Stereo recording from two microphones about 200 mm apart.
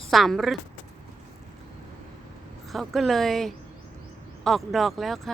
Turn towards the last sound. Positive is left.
turn(degrees=0)  # may be behind; listen again after turning